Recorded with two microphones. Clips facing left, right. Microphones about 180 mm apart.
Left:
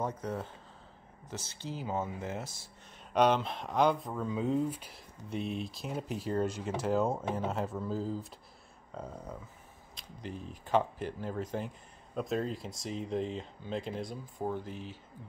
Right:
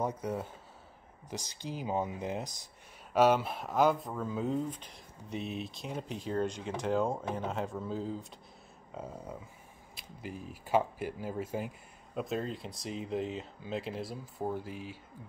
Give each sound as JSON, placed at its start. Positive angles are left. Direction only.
{"t": 0.0, "sound": "speech", "side_deg": -10}
{"t": 3.1, "sound": "speech", "side_deg": -5}